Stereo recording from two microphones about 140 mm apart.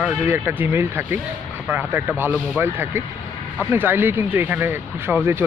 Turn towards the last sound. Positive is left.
turn(degrees=-15)  # may be behind; listen again after turning